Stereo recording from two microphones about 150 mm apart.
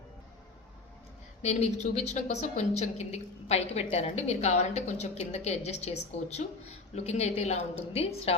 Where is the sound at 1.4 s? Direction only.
50° left (ahead or behind).